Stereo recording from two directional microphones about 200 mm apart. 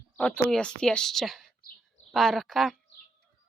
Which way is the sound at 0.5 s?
5° left (ahead or behind).